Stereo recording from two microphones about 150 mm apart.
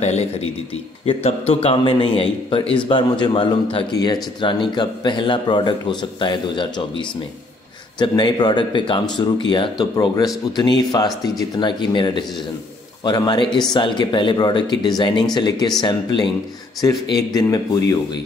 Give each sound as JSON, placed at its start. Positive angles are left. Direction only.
{"t": 0.0, "sound": "a man's voice", "side_deg": 45}